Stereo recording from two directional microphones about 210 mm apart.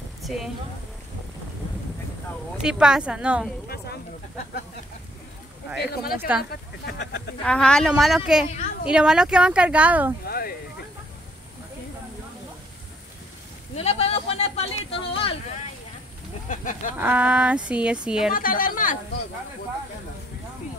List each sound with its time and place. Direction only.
2.6 s speech: 5° right (ahead or behind)
3.6 s a sound: 45° left (ahead or behind)
6.1 s speech: 5° right (ahead or behind)
6.5 s speech: 50° left (ahead or behind)
7.4 s speech: 5° left (ahead or behind)
10.2 s speech: 45° left (ahead or behind)
13.7 s speech: 30° left (ahead or behind)
16.4 s a woman's voice: 40° left (ahead or behind)
17.0 s speech: 5° right (ahead or behind)
18.3 s a woman's voice: 40° left (ahead or behind)